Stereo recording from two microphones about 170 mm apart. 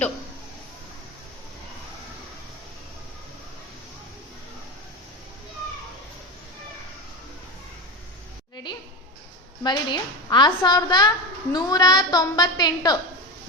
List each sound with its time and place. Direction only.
9.6 s a woman's voice: 25° left (ahead or behind)